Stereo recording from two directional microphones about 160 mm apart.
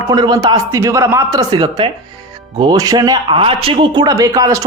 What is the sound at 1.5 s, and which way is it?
Speech, 30° right (ahead or behind).